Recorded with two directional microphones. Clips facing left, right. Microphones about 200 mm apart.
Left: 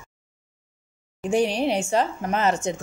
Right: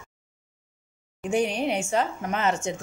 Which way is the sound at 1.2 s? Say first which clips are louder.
Left 3 dB; 35° left (ahead or behind).